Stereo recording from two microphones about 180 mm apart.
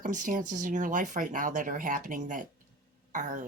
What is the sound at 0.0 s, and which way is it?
Speech, 45° right (ahead or behind).